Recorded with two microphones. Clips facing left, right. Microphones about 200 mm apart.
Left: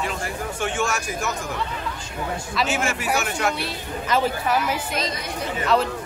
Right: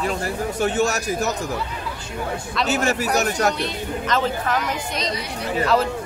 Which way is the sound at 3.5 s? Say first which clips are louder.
Right 3 dB; 10° left (ahead or behind).